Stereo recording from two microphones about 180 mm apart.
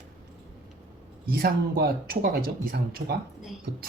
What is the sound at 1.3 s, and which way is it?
Speech, 55° right (ahead or behind).